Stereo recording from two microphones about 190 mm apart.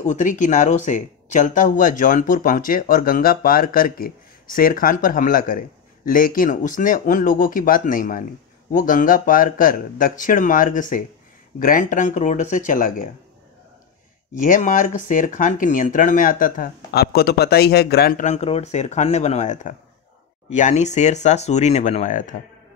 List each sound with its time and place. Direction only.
0.0 s speech: 40° left (ahead or behind)
14.3 s speech: 45° left (ahead or behind)
18.2 s speech: 35° left (ahead or behind)